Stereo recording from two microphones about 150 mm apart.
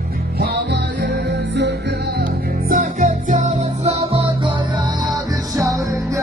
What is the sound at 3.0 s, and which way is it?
Music, 50° right (ahead or behind).